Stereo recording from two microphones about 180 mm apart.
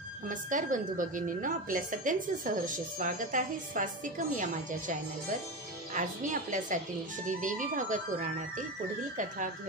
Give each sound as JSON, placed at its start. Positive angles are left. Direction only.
{"t": 0.3, "sound": "a woman's voice", "side_deg": -45}
{"t": 5.9, "sound": "a woman's voice", "side_deg": -45}